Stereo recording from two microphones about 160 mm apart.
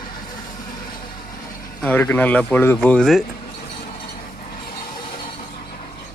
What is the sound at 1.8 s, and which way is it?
Speech, 10° left (ahead or behind).